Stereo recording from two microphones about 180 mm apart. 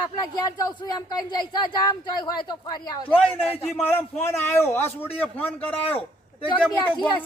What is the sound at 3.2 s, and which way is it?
A man's voice, 10° left (ahead or behind).